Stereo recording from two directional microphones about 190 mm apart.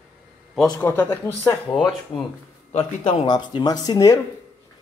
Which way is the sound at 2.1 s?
25° left (ahead or behind).